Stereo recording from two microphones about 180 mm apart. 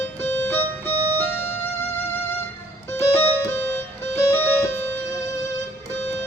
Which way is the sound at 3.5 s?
15° left (ahead or behind).